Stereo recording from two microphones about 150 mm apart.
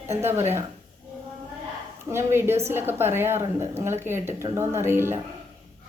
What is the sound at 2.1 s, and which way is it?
A woman's voice, 15° right (ahead or behind).